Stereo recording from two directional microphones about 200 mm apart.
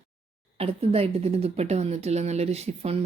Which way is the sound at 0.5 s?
30° right (ahead or behind).